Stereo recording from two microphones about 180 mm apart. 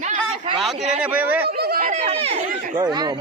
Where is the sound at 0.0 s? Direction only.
40° right (ahead or behind).